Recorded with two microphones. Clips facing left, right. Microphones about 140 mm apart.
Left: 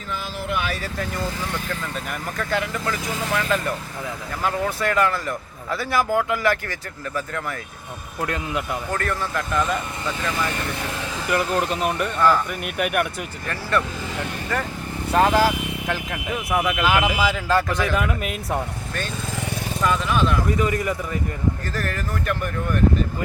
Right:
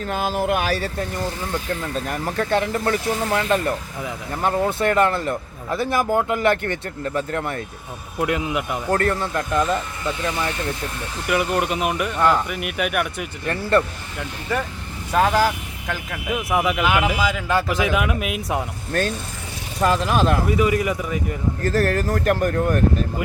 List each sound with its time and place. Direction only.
0.1 s speech: 50° right (ahead or behind); by 7.5 s 25° right (ahead or behind)
8.2 s speech: 15° right (ahead or behind)
8.9 s speech: 35° right (ahead or behind)
9.2 s speech: 25° right (ahead or behind)
11.3 s speech: 5° right (ahead or behind)
13.5 s speech: 30° right (ahead or behind)
15.1 s speech: 5° left (ahead or behind)
17.8 s speech: 10° right (ahead or behind)
19.8 s speech: 35° right (ahead or behind)
20.6 s speech: 10° right (ahead or behind)
21.6 s speech: 40° right (ahead or behind)